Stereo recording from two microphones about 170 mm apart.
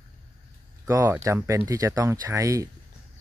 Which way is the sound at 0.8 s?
15° right (ahead or behind).